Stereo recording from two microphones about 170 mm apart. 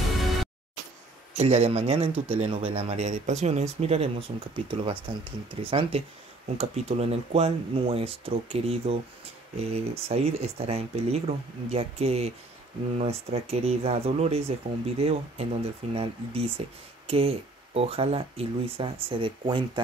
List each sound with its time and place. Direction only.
1.3 s speech: 40° right (ahead or behind)